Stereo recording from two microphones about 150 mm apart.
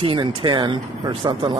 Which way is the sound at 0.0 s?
35° right (ahead or behind).